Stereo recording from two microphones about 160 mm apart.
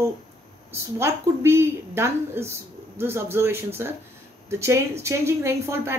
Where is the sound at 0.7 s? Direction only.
15° right (ahead or behind).